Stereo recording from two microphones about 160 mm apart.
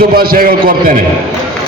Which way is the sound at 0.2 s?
65° right (ahead or behind).